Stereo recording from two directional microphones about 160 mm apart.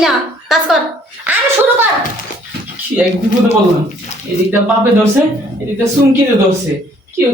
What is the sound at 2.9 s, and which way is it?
Speech, 15° right (ahead or behind).